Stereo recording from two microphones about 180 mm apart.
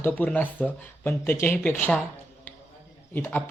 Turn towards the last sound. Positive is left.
turn(degrees=10)  # may be behind; listen again after turning